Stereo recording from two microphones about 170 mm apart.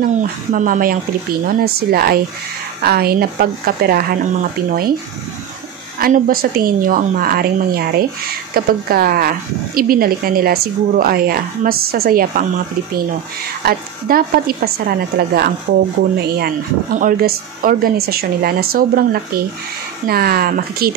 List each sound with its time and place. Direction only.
0.5 s speech: 50° right (ahead or behind)
5.9 s speech: 55° right (ahead or behind)